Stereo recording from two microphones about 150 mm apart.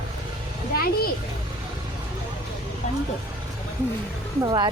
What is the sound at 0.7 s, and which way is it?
Speech, 85° left.